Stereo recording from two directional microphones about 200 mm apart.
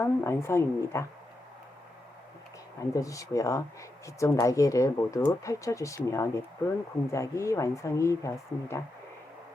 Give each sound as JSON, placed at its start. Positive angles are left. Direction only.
{"t": 0.0, "sound": "speech", "side_deg": 15}
{"t": 2.9, "sound": "speech", "side_deg": 15}